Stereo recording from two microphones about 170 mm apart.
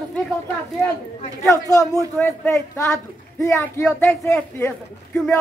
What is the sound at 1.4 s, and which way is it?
Speech, 20° left (ahead or behind).